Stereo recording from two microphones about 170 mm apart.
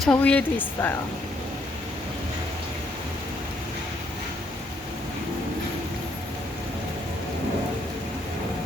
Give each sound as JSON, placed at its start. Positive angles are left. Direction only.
{"t": 0.0, "sound": "a woman's voice", "side_deg": 5}